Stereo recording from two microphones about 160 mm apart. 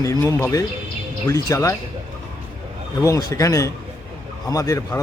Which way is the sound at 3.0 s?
20° left (ahead or behind).